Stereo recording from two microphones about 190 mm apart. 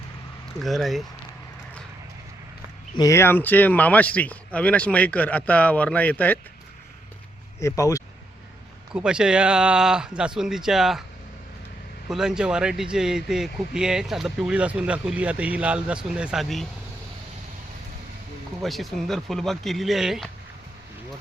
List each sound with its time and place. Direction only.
0.6 s speech: centre (ahead or behind)
2.9 s speech: 20° left (ahead or behind)
7.6 s speech: 15° left (ahead or behind)
8.9 s speech: 5° right (ahead or behind)
12.0 s speech: 5° right (ahead or behind)
18.6 s speech: centre (ahead or behind)